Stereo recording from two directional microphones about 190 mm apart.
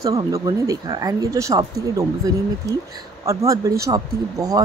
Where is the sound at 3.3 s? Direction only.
15° right (ahead or behind).